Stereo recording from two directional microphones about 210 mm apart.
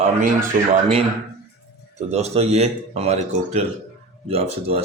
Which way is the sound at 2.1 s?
30° right (ahead or behind).